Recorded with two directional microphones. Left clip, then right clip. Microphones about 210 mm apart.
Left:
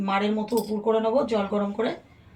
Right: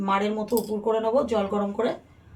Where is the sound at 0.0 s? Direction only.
20° right (ahead or behind).